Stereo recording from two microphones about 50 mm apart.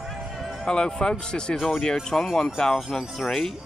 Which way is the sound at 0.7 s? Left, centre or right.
Centre.